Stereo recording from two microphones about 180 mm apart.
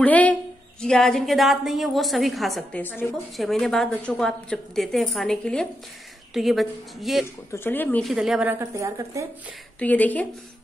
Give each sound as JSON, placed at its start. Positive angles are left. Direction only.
{"t": 0.0, "sound": "a woman's voice", "side_deg": 10}
{"t": 7.5, "sound": "a woman's voice", "side_deg": 10}
{"t": 8.5, "sound": "a woman's voice", "side_deg": -15}
{"t": 9.8, "sound": "speech", "side_deg": 10}